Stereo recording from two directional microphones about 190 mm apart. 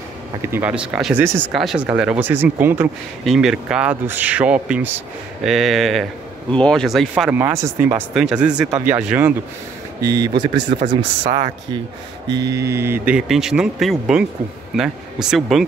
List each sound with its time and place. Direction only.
0.4 s speech: 10° right (ahead or behind)
7.3 s speech: 15° right (ahead or behind)
8.1 s speech: 5° right (ahead or behind)
10.0 s speech: 20° right (ahead or behind)
11.2 s speech: 40° right (ahead or behind)
12.3 s mantra: 65° right (ahead or behind)
12.7 s speech: 10° right (ahead or behind)